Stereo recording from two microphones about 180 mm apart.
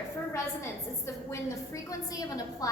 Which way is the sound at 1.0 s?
15° left (ahead or behind).